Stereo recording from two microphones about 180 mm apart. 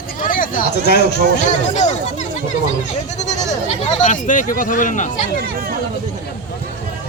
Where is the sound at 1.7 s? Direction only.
40° left (ahead or behind).